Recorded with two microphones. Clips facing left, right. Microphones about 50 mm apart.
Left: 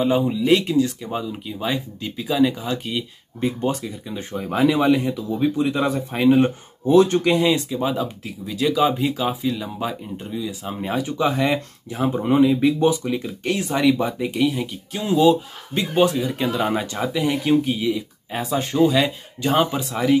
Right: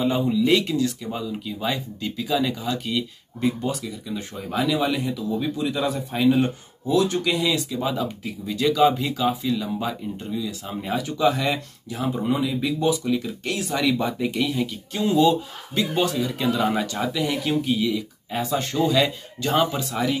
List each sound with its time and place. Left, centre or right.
0.2 s speech: centre
3.3 s speech: left
7.8 s speech: centre
8.2 s speech: centre; by 13.9 s left
13.9 s speech: centre